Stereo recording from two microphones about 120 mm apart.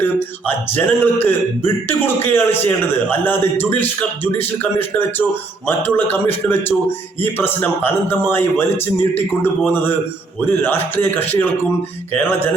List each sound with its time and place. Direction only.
0.0 s a man's voice: 15° left (ahead or behind)